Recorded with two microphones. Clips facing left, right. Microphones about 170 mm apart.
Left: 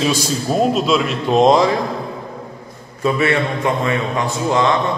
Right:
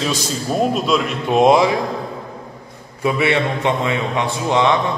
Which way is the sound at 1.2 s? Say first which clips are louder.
Even; 10° right (ahead or behind).